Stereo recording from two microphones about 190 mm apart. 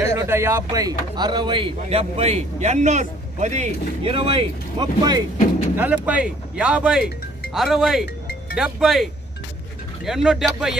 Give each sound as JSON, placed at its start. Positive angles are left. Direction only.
{"t": 0.0, "sound": "speech", "side_deg": -15}
{"t": 6.0, "sound": "speech", "side_deg": -5}